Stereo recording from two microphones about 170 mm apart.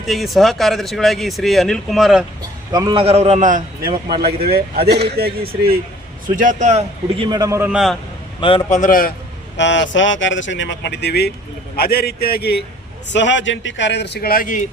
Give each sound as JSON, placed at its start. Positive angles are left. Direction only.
{"t": 0.0, "sound": "speech", "side_deg": 0}
{"t": 2.7, "sound": "a man's voice", "side_deg": -30}
{"t": 4.4, "sound": "speech", "side_deg": -65}
{"t": 6.2, "sound": "a man's voice", "side_deg": -50}
{"t": 7.2, "sound": "a man's voice", "side_deg": -20}
{"t": 7.7, "sound": "speech", "side_deg": 0}
{"t": 8.4, "sound": "a man's voice", "side_deg": 30}
{"t": 8.7, "sound": "a man's voice", "side_deg": 50}
{"t": 9.6, "sound": "speech", "side_deg": 90}
{"t": 11.8, "sound": "a man's voice", "side_deg": 65}
{"t": 13.1, "sound": "speech", "side_deg": 90}